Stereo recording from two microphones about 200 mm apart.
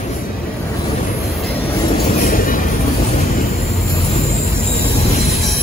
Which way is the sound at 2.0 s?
45° left (ahead or behind).